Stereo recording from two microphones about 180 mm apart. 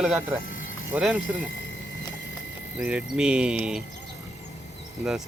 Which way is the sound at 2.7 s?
5° right (ahead or behind).